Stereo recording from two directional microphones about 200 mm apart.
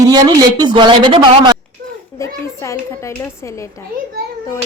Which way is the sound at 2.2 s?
15° left (ahead or behind).